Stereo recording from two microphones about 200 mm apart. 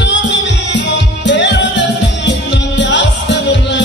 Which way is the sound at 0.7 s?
65° left (ahead or behind).